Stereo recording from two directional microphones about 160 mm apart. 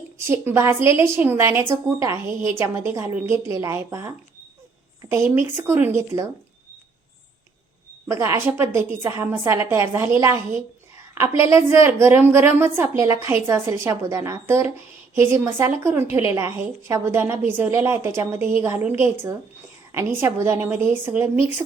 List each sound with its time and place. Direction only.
0.3 s a woman's voice: 15° right (ahead or behind)
8.0 s a woman's voice: 15° right (ahead or behind)